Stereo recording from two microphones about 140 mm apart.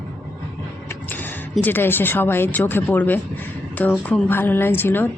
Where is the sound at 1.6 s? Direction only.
15° left (ahead or behind).